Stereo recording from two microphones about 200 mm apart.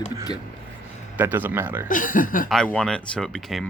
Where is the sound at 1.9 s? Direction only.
40° left (ahead or behind).